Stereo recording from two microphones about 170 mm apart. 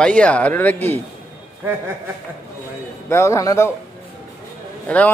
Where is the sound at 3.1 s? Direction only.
15° left (ahead or behind).